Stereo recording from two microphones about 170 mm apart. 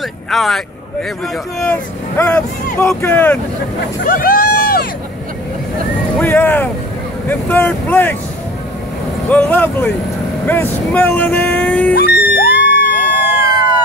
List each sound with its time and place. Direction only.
0.3 s speech: centre (ahead or behind)
1.6 s speech: 10° left (ahead or behind)
4.0 s a sound: 55° left (ahead or behind)
6.1 s speech: 10° left (ahead or behind)
9.3 s speech: 10° left (ahead or behind)
11.9 s music: 65° left (ahead or behind)